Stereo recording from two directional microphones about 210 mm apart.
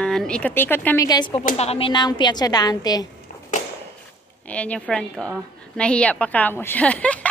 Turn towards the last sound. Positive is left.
turn(degrees=5)  # may be behind; listen again after turning